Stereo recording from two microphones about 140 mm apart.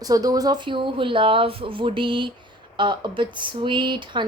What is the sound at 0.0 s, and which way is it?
Speech, 25° right (ahead or behind).